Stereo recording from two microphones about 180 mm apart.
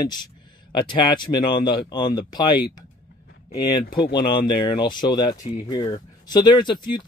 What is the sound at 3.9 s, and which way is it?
Speech, 75° left (ahead or behind).